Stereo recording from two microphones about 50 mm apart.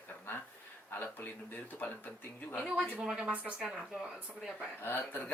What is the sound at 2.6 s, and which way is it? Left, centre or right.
Speech, centre.